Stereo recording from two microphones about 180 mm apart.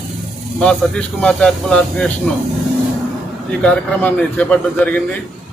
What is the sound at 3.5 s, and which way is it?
A man's voice, 5° left (ahead or behind).